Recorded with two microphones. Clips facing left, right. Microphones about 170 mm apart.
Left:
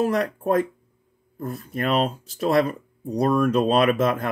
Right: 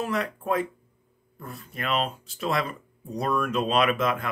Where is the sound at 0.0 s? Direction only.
40° left (ahead or behind).